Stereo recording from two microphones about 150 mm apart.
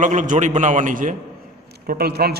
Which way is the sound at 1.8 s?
85° right.